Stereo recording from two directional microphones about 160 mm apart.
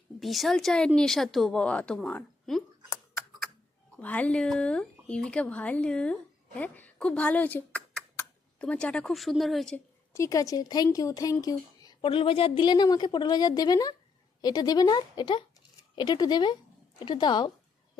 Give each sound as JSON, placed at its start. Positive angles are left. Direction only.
{"t": 0.2, "sound": "a woman's voice", "side_deg": 0}
{"t": 4.0, "sound": "a woman's voice", "side_deg": 10}
{"t": 10.1, "sound": "a woman's voice", "side_deg": 20}